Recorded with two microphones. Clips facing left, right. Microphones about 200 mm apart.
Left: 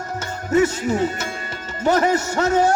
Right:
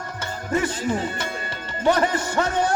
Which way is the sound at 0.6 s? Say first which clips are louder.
Left 5 dB; 45° left (ahead or behind).